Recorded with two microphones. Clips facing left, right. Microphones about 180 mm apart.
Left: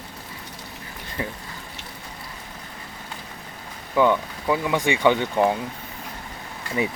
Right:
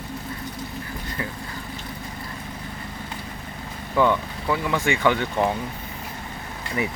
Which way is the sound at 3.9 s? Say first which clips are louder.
Left 1 dB; 10° left (ahead or behind).